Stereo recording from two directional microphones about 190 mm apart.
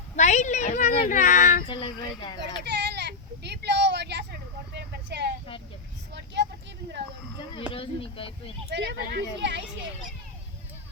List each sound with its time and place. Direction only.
0.2 s speech: 40° left (ahead or behind)
1.6 s speech: 25° left (ahead or behind)
2.6 s vehicle: 60° right (ahead or behind)
6.1 s speech: 65° right (ahead or behind)
7.5 s speech: 30° left (ahead or behind)
8.7 s speech: 65° right (ahead or behind)